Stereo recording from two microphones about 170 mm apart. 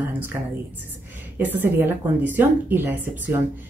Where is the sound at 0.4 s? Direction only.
15° right (ahead or behind).